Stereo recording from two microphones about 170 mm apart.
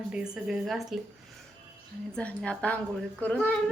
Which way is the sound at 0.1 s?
5° right (ahead or behind).